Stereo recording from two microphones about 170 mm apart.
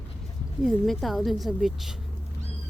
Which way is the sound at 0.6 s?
Centre (ahead or behind).